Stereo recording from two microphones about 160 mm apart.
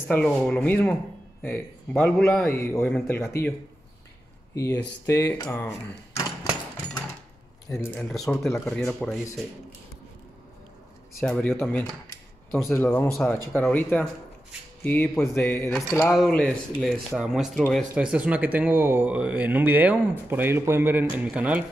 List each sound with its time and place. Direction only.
0.1 s speech: 10° left (ahead or behind)
2.9 s speech: 5° left (ahead or behind)
4.6 s speech: 20° left (ahead or behind)
7.7 s speech: 15° left (ahead or behind)
11.4 s speech: 10° left (ahead or behind)
12.1 s cutlery: 15° left (ahead or behind)
12.7 s speech: 10° left (ahead or behind); by 21.6 s 10° right (ahead or behind)